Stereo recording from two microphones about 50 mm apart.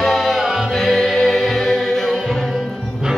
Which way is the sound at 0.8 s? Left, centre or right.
Centre.